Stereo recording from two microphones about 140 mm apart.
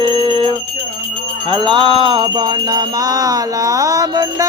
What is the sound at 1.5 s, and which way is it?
Jingle bell, 35° right (ahead or behind).